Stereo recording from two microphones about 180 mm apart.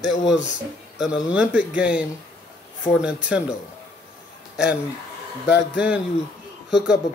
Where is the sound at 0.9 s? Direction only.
5° right (ahead or behind).